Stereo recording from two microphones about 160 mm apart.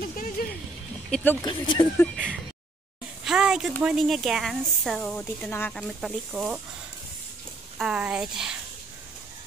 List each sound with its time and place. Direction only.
0.0 s music: 65° left (ahead or behind)
1.1 s speech: 10° left (ahead or behind)
1.4 s speech: 30° left (ahead or behind)
2.0 s speech: 5° left (ahead or behind)
3.3 s a sound: 5° right (ahead or behind)
3.8 s speech: centre (ahead or behind)
5.1 s speech: 10° left (ahead or behind)
7.8 s speech: 5° right (ahead or behind)